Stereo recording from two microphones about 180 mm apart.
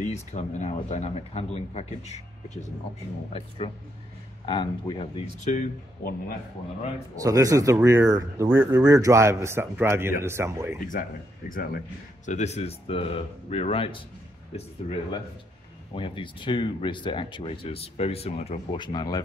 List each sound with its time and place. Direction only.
0.0 s speech: 40° left (ahead or behind)
7.2 s a man's voice: 20° right (ahead or behind)
10.9 s speech: 50° left (ahead or behind)
12.3 s speech: 40° left (ahead or behind); by 19.2 s 20° left (ahead or behind)